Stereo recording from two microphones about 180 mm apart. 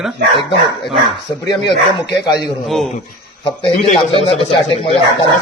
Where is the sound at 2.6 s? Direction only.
Centre (ahead or behind).